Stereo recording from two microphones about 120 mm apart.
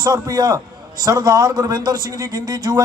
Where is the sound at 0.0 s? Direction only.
30° right (ahead or behind).